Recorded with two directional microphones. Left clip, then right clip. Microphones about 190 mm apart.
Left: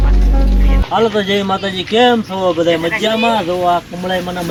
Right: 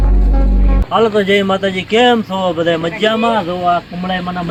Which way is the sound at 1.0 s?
20° right (ahead or behind).